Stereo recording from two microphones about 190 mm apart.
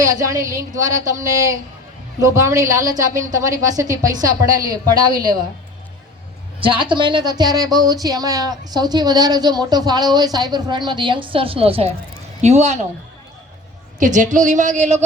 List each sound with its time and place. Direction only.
0.0 s a woman's voice: 20° right (ahead or behind)
6.6 s a woman's voice: 25° right (ahead or behind)
14.0 s speech: 40° right (ahead or behind)